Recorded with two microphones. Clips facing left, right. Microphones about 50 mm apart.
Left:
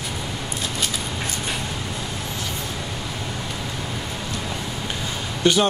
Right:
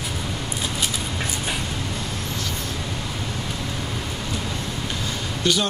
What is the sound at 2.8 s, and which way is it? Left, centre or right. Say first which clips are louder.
Vehicle: even; centre.